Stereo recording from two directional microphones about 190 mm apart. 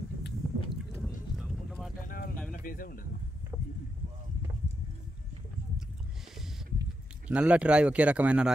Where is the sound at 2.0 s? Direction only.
50° left (ahead or behind).